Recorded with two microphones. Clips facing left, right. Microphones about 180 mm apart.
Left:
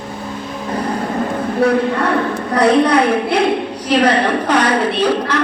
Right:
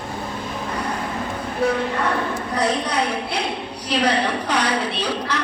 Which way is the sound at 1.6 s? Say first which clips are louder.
Left 6 dB; 65° left (ahead or behind).